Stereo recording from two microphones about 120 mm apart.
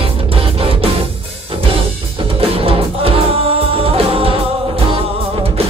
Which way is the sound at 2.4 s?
50° right (ahead or behind).